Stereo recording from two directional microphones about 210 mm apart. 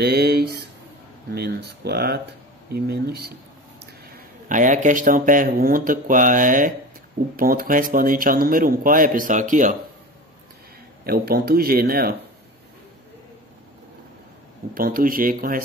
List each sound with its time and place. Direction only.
0.0 s a man's voice: 50° right (ahead or behind)
11.1 s speech: 45° right (ahead or behind)
14.7 s speech: 45° right (ahead or behind)